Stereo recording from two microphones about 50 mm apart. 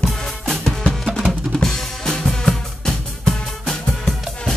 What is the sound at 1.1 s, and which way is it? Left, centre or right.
Drum kit, centre.